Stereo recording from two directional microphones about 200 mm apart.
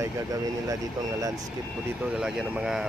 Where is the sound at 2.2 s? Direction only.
5° right (ahead or behind).